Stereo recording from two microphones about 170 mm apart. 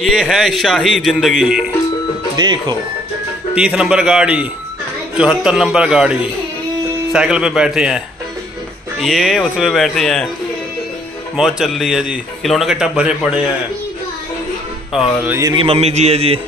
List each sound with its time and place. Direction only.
0.0 s a man's voice: centre (ahead or behind)
2.3 s speech: 25° right (ahead or behind)
3.5 s a man's voice: 5° right (ahead or behind)
9.0 s a man's voice: centre (ahead or behind)
11.3 s a man's voice: centre (ahead or behind)
14.9 s a man's voice: centre (ahead or behind)
15.5 s a man's voice: 35° right (ahead or behind)